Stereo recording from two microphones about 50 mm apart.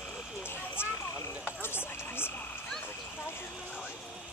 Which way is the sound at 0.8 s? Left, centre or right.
Left.